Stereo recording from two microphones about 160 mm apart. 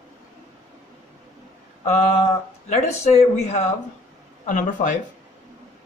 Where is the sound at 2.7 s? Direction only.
45° left (ahead or behind).